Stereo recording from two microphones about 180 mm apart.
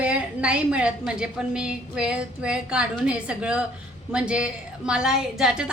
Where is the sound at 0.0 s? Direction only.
5° right (ahead or behind).